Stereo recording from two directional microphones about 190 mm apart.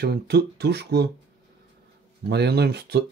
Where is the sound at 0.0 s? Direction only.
60° right (ahead or behind).